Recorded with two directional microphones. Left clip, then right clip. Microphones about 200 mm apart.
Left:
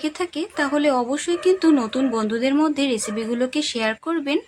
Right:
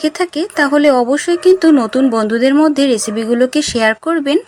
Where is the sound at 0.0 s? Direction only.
30° right (ahead or behind).